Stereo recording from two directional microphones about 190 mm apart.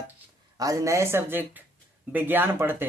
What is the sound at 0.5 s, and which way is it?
Speech, 20° right (ahead or behind).